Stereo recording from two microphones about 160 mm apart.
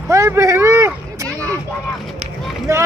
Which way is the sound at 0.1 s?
15° right (ahead or behind).